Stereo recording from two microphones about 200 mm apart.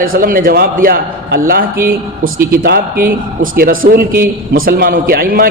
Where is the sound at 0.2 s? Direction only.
45° right (ahead or behind).